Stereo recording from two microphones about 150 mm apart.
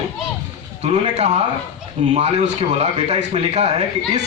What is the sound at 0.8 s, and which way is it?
A man's voice, 45° right (ahead or behind).